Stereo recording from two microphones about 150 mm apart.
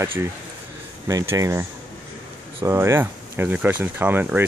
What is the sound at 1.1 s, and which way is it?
Speech, 20° right (ahead or behind).